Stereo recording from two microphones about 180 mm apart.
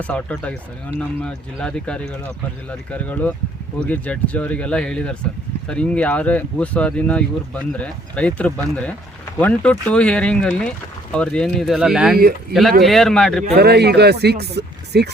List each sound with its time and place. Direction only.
0.0 s speech: 10° left (ahead or behind)
12.1 s speech: 55° right (ahead or behind)
12.8 s speech: centre (ahead or behind)
13.6 s speech: 65° right (ahead or behind)